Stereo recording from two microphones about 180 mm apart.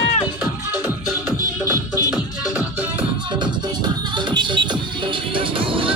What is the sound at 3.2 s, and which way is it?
Music, 25° right (ahead or behind).